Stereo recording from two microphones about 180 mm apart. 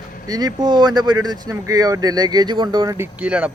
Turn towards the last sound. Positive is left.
turn(degrees=-5)  # may be behind; listen again after turning